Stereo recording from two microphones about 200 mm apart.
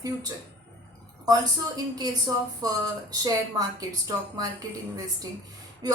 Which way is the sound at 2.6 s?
20° right (ahead or behind).